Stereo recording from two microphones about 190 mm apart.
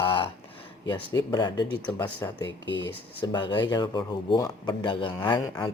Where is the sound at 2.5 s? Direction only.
70° left (ahead or behind).